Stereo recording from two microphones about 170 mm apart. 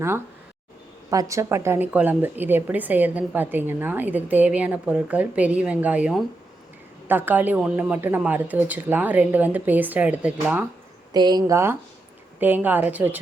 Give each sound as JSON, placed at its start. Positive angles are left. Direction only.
{"t": 1.1, "sound": "a woman's voice", "side_deg": -20}
{"t": 11.1, "sound": "a woman's voice", "side_deg": -25}